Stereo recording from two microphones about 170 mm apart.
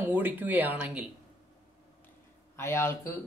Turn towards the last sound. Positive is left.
turn(degrees=15)  # may be behind; listen again after turning